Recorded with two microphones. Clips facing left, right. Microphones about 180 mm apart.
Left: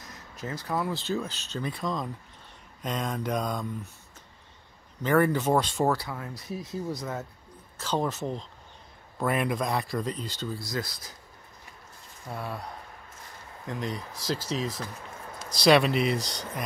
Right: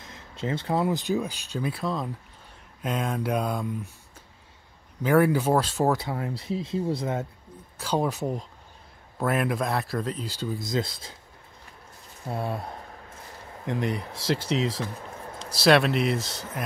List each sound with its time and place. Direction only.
0.0 s speech: 25° right (ahead or behind); by 3.9 s 10° right (ahead or behind)
5.0 s speech: 10° right (ahead or behind)
5.9 s speech: 25° right (ahead or behind)
7.8 s speech: 10° right (ahead or behind)
10.6 s speech: 25° right (ahead or behind)
12.3 s speech: 25° right (ahead or behind)
13.7 s speech: 60° right (ahead or behind)
14.4 s speech: 30° right (ahead or behind)
15.5 s speech: centre (ahead or behind)